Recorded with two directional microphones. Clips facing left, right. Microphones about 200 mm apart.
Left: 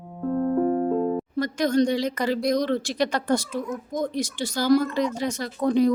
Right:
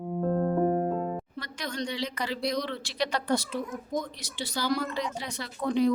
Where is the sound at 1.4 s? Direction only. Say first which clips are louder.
Left 14 dB; 45° left (ahead or behind).